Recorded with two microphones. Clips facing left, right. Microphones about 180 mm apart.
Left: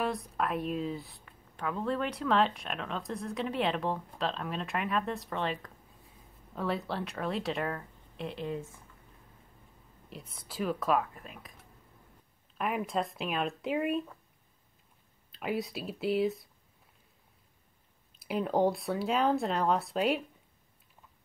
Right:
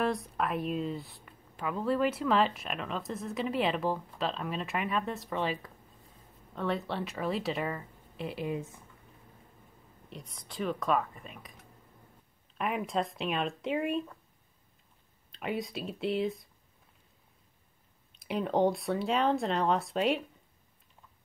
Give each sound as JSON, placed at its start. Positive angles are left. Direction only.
{"t": 0.0, "sound": "speech", "side_deg": 0}
{"t": 10.0, "sound": "speech", "side_deg": 5}
{"t": 12.5, "sound": "speech", "side_deg": 0}
{"t": 15.3, "sound": "speech", "side_deg": 0}
{"t": 18.1, "sound": "speech", "side_deg": 0}